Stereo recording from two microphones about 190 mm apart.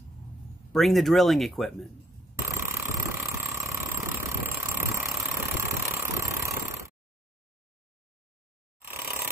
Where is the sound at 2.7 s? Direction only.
10° right (ahead or behind).